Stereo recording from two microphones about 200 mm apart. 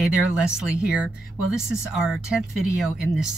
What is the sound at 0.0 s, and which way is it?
Speech, 5° right (ahead or behind).